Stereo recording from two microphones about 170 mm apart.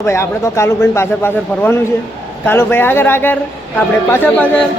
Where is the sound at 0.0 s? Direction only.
15° left (ahead or behind).